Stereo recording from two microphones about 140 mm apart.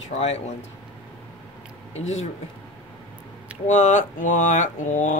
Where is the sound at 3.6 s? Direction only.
60° left (ahead or behind).